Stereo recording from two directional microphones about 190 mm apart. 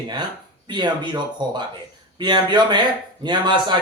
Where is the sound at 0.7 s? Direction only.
25° right (ahead or behind).